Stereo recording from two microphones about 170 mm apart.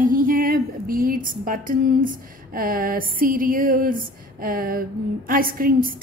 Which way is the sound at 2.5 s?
60° right (ahead or behind).